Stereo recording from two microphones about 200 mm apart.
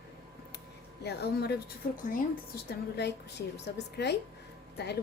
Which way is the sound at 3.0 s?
55° left (ahead or behind).